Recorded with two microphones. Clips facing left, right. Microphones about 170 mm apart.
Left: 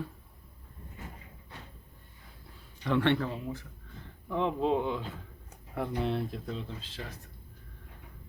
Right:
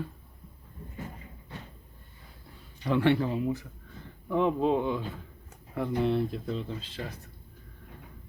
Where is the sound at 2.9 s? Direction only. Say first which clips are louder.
Right 3 dB; 5° right (ahead or behind).